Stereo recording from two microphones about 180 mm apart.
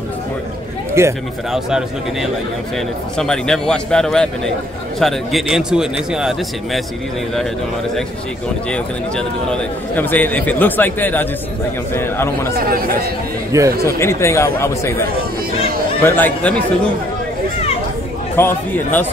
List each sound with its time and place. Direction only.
1.0 s speech: 15° right (ahead or behind)
1.5 s speech: 5° right (ahead or behind)
3.2 s speech: 5° left (ahead or behind)
8.6 s a man's voice: 5° left (ahead or behind)
12.5 s speech: 55° right (ahead or behind)
13.5 s speech: 15° right (ahead or behind)
13.8 s a man's voice: 15° left (ahead or behind)
18.3 s a man's voice: 10° left (ahead or behind)